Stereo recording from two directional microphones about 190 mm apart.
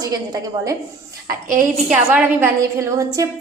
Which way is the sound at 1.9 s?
10° right (ahead or behind).